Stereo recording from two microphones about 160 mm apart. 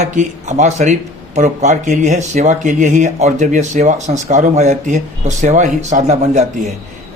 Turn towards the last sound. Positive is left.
turn(degrees=-45)  # may be behind; listen again after turning